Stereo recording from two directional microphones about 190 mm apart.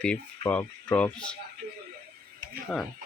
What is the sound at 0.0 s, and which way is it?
Speech, 5° left (ahead or behind).